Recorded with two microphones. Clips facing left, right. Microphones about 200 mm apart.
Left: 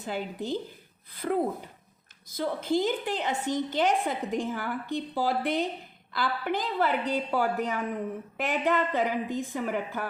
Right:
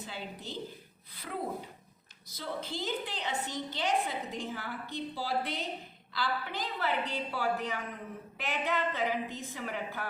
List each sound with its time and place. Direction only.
0.0 s a woman's voice: 50° left (ahead or behind)